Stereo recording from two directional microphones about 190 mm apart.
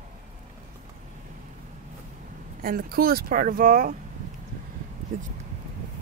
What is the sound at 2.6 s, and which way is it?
Speech, 50° right (ahead or behind).